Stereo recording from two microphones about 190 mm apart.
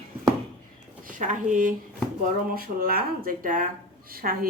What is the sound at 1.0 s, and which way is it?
Speech, 40° right (ahead or behind).